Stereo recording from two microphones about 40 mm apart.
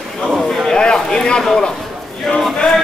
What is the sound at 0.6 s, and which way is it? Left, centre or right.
Speech, centre.